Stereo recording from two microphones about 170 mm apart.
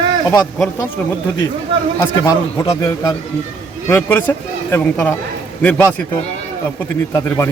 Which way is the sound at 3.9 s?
15° left (ahead or behind).